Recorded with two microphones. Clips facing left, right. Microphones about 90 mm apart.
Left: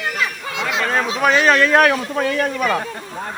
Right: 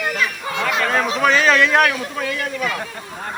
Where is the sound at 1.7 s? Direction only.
30° left (ahead or behind).